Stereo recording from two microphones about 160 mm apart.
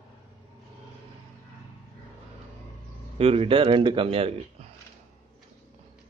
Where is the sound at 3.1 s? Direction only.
40° right (ahead or behind).